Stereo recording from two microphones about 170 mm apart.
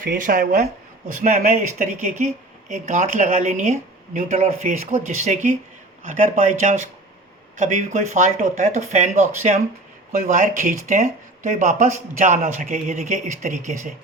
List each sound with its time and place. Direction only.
0.0 s speech: 55° right (ahead or behind)
10.1 s speech: 50° right (ahead or behind)